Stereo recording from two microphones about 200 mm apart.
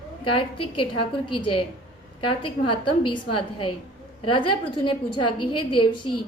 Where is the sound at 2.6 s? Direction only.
25° left (ahead or behind).